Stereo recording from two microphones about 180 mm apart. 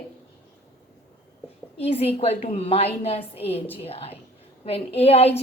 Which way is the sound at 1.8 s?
35° left (ahead or behind).